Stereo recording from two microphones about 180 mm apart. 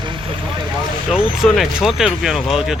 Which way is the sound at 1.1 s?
Centre (ahead or behind).